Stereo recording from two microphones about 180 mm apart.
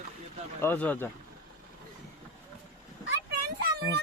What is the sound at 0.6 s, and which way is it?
Speech, 10° left (ahead or behind).